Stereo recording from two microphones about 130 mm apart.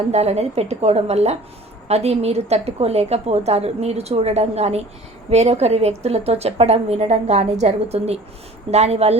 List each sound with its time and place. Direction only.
0.1 s a woman's voice: 55° right (ahead or behind)